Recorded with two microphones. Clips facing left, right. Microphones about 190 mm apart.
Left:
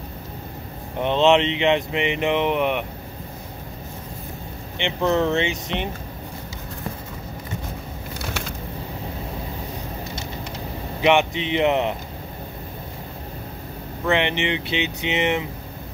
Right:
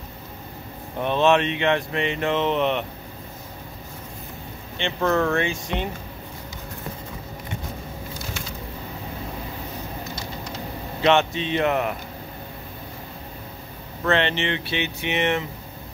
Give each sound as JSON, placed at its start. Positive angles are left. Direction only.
{"t": 0.9, "sound": "speech", "side_deg": 20}
{"t": 4.7, "sound": "speech", "side_deg": 20}
{"t": 8.2, "sound": "a sound", "side_deg": 70}
{"t": 11.0, "sound": "speech", "side_deg": 15}
{"t": 14.0, "sound": "speech", "side_deg": 15}